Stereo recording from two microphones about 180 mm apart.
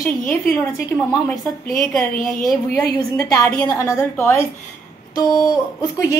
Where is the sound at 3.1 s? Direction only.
20° left (ahead or behind).